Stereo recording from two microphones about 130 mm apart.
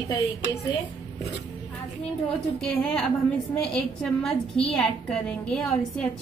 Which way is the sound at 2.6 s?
5° left (ahead or behind).